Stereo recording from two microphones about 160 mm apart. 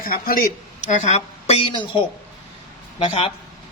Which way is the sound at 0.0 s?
65° left (ahead or behind).